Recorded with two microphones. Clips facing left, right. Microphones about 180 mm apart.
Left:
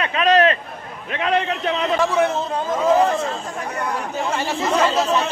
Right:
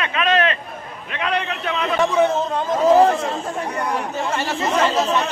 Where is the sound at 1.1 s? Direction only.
35° left (ahead or behind).